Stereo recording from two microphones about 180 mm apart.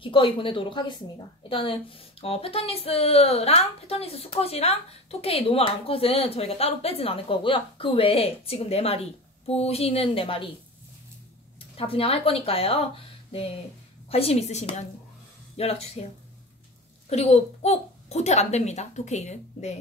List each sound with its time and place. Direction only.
0.0 s a woman's voice: 30° left (ahead or behind)
11.7 s a woman's voice: 30° left (ahead or behind)
17.1 s a woman's voice: 35° left (ahead or behind)